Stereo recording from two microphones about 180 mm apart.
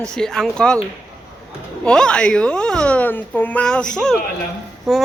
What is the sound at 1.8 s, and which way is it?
Speech, 5° left (ahead or behind).